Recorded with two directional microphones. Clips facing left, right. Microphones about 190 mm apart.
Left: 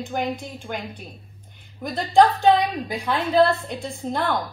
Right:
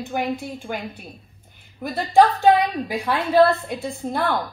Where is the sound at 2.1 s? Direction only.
10° right (ahead or behind).